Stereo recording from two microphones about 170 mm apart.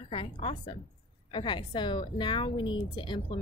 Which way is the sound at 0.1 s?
30° left (ahead or behind).